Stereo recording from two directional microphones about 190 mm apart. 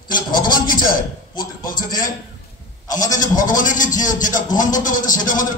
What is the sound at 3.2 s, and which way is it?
A man's voice, 45° left (ahead or behind).